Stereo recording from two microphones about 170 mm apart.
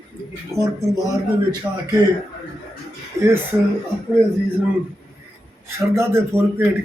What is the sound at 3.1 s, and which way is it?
Speech, 15° right (ahead or behind).